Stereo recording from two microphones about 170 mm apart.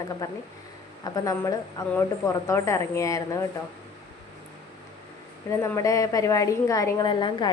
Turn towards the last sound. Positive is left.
turn(degrees=25)  # may be behind; listen again after turning